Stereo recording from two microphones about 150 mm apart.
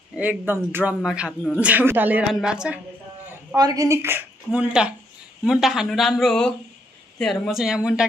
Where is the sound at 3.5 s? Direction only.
25° right (ahead or behind).